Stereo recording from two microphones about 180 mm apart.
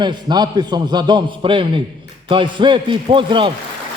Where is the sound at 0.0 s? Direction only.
25° right (ahead or behind).